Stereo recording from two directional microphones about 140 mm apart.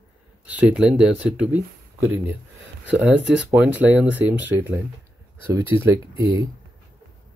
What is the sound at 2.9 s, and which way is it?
Speech, 10° right (ahead or behind).